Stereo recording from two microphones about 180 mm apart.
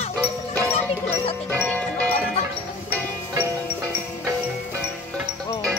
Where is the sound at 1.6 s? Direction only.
5° left (ahead or behind).